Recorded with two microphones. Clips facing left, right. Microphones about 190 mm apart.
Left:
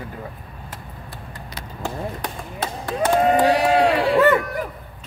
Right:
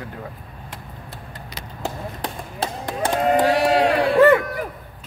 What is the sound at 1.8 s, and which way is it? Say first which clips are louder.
Chop: left 1 dB; 25° right (ahead or behind).